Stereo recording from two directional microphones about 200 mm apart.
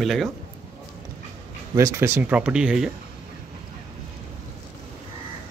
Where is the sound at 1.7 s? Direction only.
15° right (ahead or behind).